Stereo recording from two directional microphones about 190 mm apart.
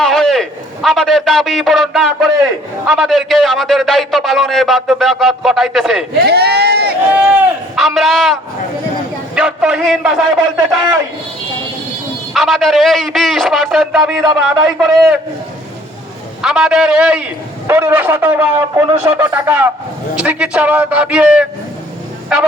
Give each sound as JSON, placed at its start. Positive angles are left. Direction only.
{"t": 0.0, "sound": "a man's voice", "side_deg": 0}
{"t": 6.1, "sound": "speech", "side_deg": -55}
{"t": 7.1, "sound": "a man's voice", "side_deg": -5}
{"t": 12.3, "sound": "a man's voice", "side_deg": 0}
{"t": 16.4, "sound": "a man's voice", "side_deg": -5}